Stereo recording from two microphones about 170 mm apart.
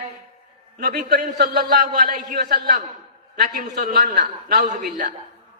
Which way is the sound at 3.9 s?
45° right (ahead or behind).